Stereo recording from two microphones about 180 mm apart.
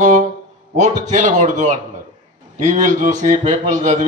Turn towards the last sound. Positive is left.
turn(degrees=-40)  # may be behind; listen again after turning